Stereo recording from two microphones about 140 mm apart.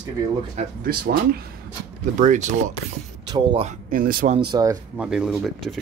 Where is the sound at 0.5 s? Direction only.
90° right.